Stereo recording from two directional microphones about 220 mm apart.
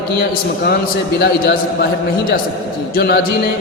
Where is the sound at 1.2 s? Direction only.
50° left (ahead or behind).